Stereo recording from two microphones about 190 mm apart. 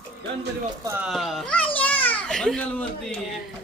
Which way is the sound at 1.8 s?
10° left (ahead or behind).